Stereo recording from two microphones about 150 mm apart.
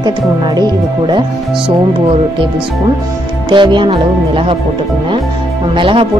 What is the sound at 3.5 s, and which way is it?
Speech, 30° right (ahead or behind).